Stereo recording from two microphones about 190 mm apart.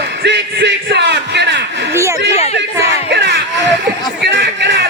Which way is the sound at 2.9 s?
60° right (ahead or behind).